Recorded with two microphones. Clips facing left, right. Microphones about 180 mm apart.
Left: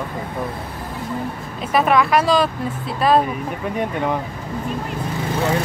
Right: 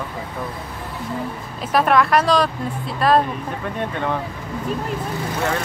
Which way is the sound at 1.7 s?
Centre (ahead or behind).